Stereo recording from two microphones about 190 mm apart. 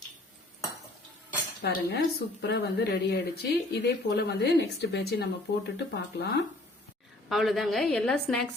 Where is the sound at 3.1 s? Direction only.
55° left (ahead or behind).